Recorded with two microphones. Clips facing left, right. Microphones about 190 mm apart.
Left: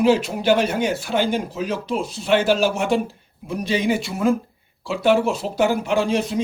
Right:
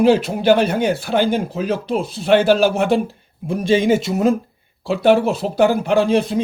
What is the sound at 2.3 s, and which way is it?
Speech, 35° right (ahead or behind).